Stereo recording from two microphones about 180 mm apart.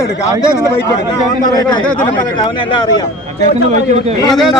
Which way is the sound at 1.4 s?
20° left (ahead or behind).